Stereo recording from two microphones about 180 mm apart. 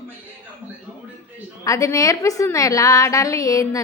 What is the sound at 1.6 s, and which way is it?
A woman's voice, 15° left (ahead or behind).